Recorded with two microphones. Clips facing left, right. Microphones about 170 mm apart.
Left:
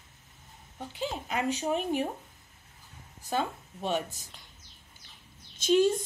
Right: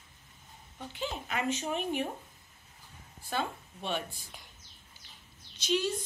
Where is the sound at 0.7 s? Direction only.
35° left (ahead or behind).